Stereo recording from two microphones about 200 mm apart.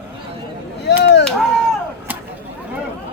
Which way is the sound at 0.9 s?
60° left (ahead or behind).